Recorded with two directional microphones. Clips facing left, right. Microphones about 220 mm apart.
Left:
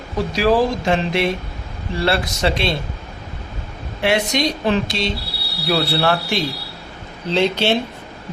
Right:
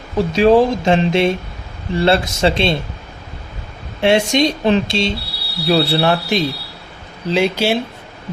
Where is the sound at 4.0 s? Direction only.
25° right (ahead or behind); by 7.7 s 10° right (ahead or behind).